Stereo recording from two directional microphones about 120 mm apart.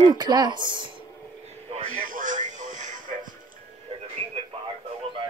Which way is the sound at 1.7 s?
90° right.